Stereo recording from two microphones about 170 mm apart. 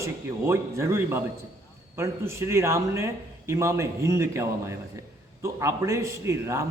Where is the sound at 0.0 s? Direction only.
15° right (ahead or behind).